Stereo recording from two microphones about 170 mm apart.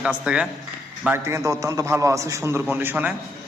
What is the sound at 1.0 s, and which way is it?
A man's voice, 15° right (ahead or behind).